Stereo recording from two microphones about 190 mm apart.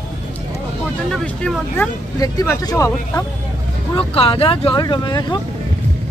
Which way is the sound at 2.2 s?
20° left (ahead or behind).